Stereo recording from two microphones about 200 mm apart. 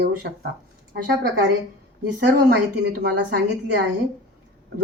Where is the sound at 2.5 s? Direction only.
55° right (ahead or behind).